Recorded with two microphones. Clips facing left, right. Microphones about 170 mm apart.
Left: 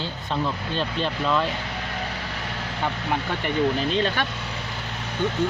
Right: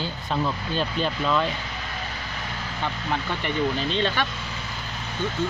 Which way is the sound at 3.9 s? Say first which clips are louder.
Left 1 dB; 40° left (ahead or behind).